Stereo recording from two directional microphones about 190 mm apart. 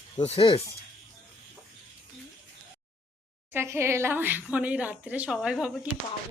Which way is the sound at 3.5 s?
15° right (ahead or behind).